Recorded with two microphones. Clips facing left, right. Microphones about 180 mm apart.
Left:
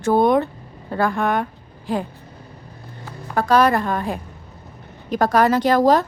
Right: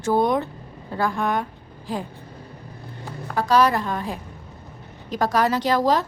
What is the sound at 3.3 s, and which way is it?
A woman's voice, 55° left (ahead or behind).